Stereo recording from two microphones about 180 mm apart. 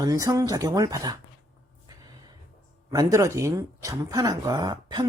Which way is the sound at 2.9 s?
20° right (ahead or behind).